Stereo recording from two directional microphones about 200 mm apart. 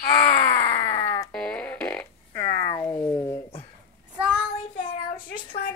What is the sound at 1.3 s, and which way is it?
Fart, 5° left (ahead or behind).